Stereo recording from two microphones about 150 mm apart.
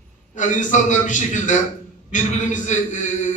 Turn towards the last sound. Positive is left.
turn(degrees=55)  # may be behind; listen again after turning